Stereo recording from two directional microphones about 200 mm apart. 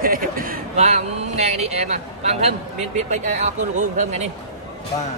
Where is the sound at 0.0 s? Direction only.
45° right (ahead or behind).